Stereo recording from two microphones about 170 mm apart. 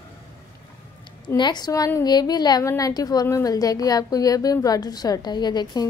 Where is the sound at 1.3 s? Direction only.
25° left (ahead or behind).